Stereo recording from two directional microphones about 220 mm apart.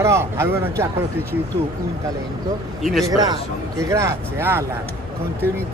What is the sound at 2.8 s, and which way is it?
Speech, centre (ahead or behind).